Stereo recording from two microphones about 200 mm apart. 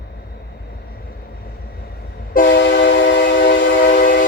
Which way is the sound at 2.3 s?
50° left (ahead or behind).